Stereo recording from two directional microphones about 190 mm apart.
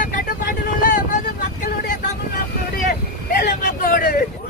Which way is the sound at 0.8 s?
45° left (ahead or behind).